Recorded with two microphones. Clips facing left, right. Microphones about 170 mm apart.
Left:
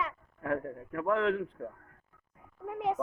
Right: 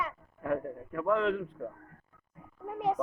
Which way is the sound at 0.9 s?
20° left (ahead or behind).